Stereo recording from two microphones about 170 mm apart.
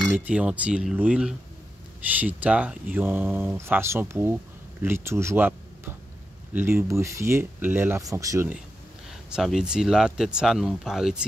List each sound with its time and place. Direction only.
0.1 s speech: 5° right (ahead or behind)
6.5 s speech: 10° right (ahead or behind)
9.3 s speech: centre (ahead or behind)